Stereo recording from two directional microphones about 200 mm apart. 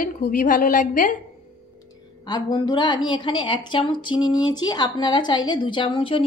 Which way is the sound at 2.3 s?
20° left (ahead or behind).